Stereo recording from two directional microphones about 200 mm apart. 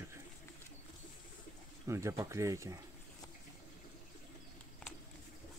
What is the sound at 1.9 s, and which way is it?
Speech, 15° right (ahead or behind).